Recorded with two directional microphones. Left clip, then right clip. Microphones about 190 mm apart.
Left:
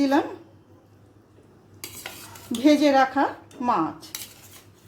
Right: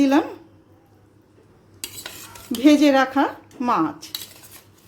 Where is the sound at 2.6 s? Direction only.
15° right (ahead or behind).